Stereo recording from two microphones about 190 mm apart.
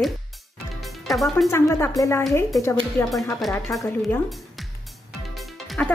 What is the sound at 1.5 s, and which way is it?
Speech, 15° left (ahead or behind).